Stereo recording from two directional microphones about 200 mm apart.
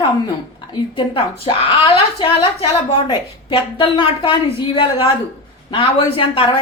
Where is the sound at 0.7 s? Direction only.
25° left (ahead or behind).